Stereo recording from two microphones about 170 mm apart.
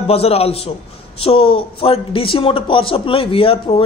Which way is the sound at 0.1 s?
35° left (ahead or behind).